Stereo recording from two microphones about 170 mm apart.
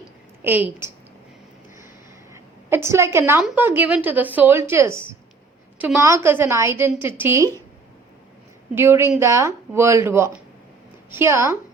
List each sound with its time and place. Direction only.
0.4 s speech: 10° right (ahead or behind)
2.3 s a sound: 15° right (ahead or behind)
3.4 s speech: 10° right (ahead or behind)
8.7 s speech: 15° right (ahead or behind)